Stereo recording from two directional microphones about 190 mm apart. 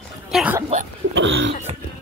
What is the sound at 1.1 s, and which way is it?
Cough, 75° right (ahead or behind).